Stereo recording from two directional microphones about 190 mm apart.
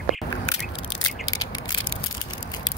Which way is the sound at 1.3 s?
20° left (ahead or behind).